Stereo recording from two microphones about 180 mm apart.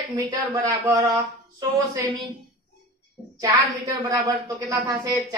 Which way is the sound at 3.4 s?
20° right (ahead or behind).